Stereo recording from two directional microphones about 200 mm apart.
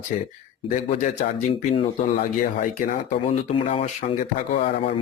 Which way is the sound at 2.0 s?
40° left (ahead or behind).